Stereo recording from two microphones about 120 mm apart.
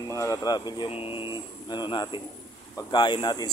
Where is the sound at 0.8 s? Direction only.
50° left (ahead or behind).